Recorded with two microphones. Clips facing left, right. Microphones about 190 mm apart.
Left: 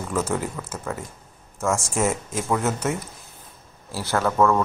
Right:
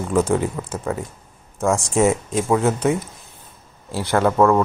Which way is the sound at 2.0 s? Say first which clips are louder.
Right 5 dB; 20° right (ahead or behind).